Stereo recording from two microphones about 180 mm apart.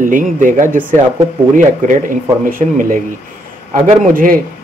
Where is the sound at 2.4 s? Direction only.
50° right (ahead or behind).